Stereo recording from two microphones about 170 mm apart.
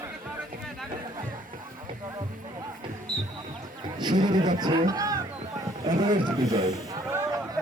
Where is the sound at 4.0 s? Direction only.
25° right (ahead or behind).